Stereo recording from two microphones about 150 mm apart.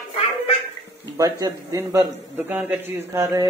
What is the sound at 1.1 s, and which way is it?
A man's voice, 25° right (ahead or behind).